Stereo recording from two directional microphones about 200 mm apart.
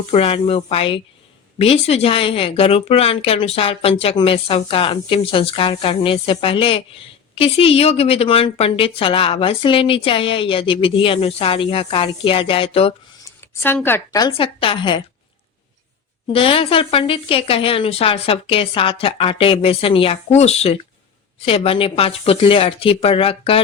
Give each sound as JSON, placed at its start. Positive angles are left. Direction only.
{"t": 0.1, "sound": "a woman's voice", "side_deg": 30}
{"t": 13.6, "sound": "a woman's voice", "side_deg": 5}
{"t": 16.3, "sound": "a woman's voice", "side_deg": 25}